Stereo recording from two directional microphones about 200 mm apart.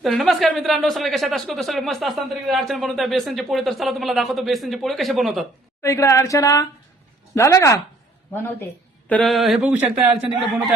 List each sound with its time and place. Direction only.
0.0 s speech: centre (ahead or behind)
5.8 s speech: 15° left (ahead or behind); by 10.1 s 5° right (ahead or behind)